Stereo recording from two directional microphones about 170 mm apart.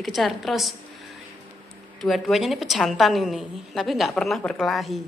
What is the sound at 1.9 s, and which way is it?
A woman's voice, centre (ahead or behind).